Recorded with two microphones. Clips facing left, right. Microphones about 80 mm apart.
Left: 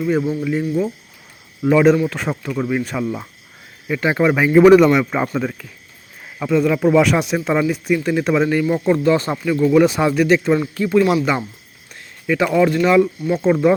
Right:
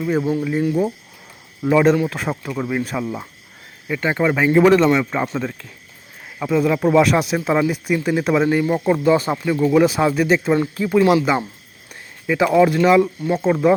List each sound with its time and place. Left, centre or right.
0.0 s speech: centre
1.6 s speech: centre